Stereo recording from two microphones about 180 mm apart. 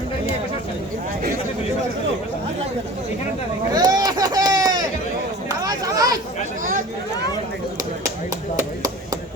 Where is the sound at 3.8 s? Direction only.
20° right (ahead or behind).